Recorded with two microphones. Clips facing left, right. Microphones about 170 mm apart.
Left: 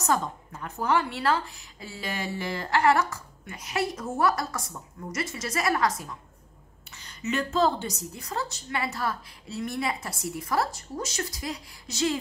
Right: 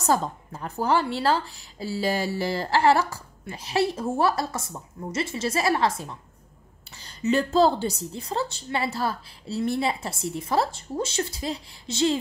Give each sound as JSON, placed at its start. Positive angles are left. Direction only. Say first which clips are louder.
{"t": 0.0, "sound": "a woman's voice", "louder": "right 3 dB", "side_deg": -35}